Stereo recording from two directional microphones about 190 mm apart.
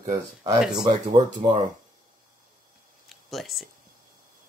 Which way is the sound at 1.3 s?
40° right (ahead or behind).